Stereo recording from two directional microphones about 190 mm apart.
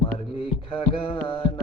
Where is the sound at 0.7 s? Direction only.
30° left (ahead or behind).